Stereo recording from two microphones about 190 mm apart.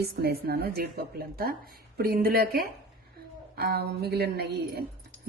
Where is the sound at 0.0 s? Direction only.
55° right (ahead or behind).